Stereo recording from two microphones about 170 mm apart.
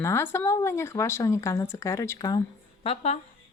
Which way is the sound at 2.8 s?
40° left (ahead or behind).